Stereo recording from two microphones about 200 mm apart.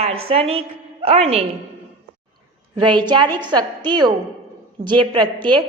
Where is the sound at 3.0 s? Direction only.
20° right (ahead or behind).